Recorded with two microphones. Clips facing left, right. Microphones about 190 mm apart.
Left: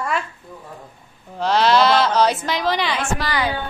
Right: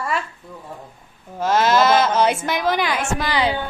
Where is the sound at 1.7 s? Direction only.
45° right (ahead or behind).